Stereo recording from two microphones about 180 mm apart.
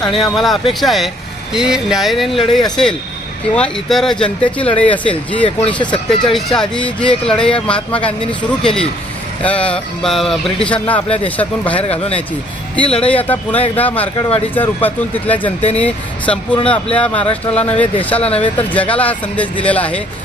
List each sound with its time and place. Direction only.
0.0 s speech: centre (ahead or behind)
11.8 s speech: 35° left (ahead or behind)
13.0 s speech: 10° left (ahead or behind)
14.2 s speech: 30° left (ahead or behind)
14.5 s speech: 10° left (ahead or behind)